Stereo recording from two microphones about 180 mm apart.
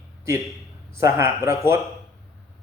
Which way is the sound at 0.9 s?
15° right (ahead or behind).